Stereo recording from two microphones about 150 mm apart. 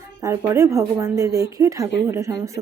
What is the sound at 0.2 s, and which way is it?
Speech, 20° right (ahead or behind).